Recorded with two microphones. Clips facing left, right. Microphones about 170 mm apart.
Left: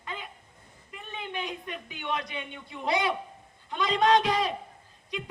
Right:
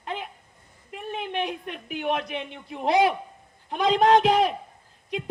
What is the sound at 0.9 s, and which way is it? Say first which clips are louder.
A man's voice: right 7 dB; 70° right (ahead or behind).